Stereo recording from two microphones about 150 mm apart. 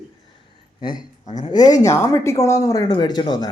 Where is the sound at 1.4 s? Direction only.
25° left (ahead or behind).